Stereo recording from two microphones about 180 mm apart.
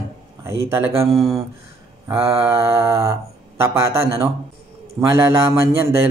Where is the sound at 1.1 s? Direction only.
Centre (ahead or behind).